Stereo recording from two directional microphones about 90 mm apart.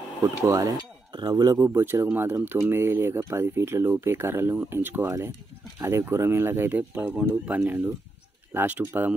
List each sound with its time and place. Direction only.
0.5 s a sound: 40° right (ahead or behind)
1.1 s speech: 50° right (ahead or behind)
1.6 s speech: 30° right (ahead or behind)